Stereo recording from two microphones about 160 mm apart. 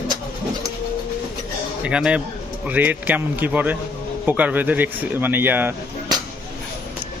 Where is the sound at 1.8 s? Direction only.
5° right (ahead or behind).